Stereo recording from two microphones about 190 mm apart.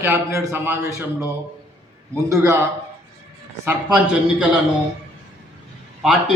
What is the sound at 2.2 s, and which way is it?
Speech, 15° right (ahead or behind).